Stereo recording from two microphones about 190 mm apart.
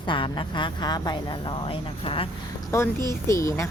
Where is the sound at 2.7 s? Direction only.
15° left (ahead or behind).